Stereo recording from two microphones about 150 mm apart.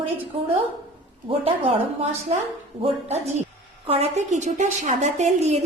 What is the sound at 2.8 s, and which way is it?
A woman's voice, 45° right (ahead or behind).